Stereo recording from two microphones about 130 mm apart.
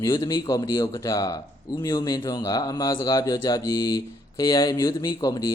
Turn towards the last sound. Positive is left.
turn(degrees=30)  # may be behind; listen again after turning